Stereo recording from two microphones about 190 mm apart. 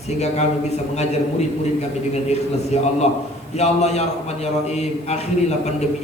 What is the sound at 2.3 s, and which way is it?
A man's voice, 35° left (ahead or behind).